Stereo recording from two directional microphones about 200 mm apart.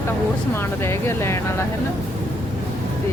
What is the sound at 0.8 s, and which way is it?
Speech, 15° left (ahead or behind).